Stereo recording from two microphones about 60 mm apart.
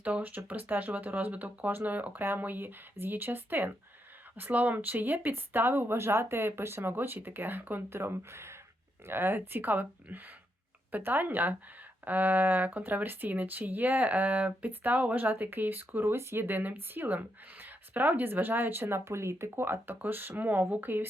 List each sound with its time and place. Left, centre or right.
0.0 s speech: right